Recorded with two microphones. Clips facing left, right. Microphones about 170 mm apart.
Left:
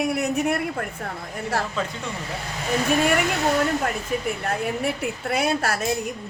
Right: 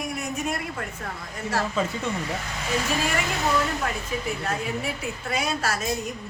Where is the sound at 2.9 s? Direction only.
60° left (ahead or behind).